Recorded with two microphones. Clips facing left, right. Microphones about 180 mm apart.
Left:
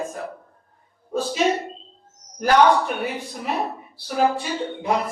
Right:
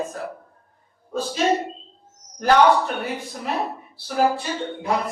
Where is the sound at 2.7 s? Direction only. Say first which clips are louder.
Even; 15° left (ahead or behind).